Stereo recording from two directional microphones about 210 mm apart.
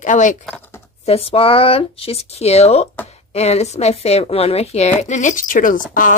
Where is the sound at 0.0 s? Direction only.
35° left (ahead or behind).